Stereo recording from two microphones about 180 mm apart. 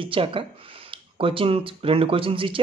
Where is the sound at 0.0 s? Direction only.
30° right (ahead or behind).